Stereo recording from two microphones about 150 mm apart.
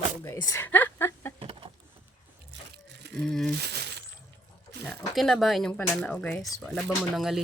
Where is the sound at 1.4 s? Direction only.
40° right (ahead or behind).